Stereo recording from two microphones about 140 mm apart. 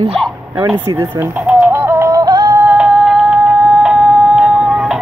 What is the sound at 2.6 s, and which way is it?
Music, 10° right (ahead or behind).